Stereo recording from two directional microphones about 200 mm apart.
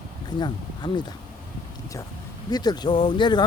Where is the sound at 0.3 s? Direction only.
20° left (ahead or behind).